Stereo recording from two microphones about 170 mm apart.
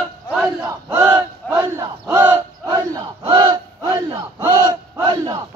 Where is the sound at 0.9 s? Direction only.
20° right (ahead or behind).